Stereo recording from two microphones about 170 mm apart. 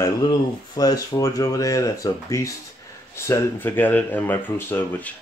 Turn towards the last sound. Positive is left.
turn(degrees=10)  # may be behind; listen again after turning